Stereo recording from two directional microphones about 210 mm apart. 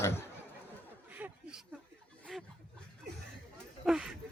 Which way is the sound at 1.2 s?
5° right (ahead or behind).